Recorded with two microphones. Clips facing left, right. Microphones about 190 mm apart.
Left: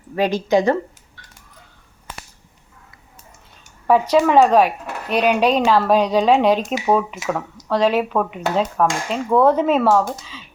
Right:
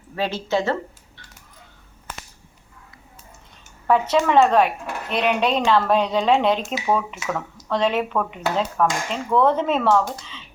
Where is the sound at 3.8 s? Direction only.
10° left (ahead or behind).